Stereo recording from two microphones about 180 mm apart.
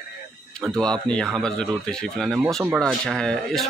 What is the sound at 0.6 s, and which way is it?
Speech, 5° left (ahead or behind).